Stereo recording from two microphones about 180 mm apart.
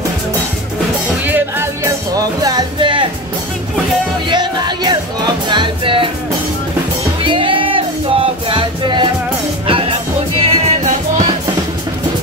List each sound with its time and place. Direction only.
1.2 s music: 10° right (ahead or behind); by 3.1 s 25° right (ahead or behind)
4.3 s music: 25° right (ahead or behind)
7.2 s music: 30° right (ahead or behind)